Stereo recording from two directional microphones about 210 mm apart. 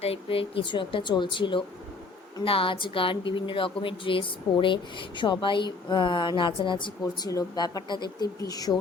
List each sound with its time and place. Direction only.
0.0 s a woman's voice: 25° left (ahead or behind)